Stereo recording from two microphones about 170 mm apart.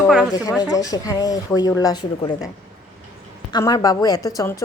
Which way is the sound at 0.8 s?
20° left (ahead or behind).